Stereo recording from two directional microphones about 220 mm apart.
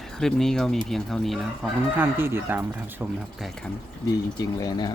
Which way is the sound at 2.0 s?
10° right (ahead or behind).